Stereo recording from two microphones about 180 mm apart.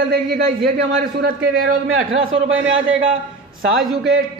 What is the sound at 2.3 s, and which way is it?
Speech, 90° right.